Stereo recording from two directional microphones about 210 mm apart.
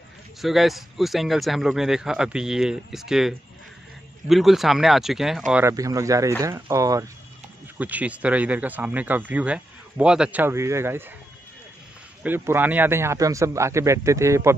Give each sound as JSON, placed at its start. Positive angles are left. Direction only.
{"t": 0.4, "sound": "speech", "side_deg": 0}
{"t": 12.2, "sound": "speech", "side_deg": -10}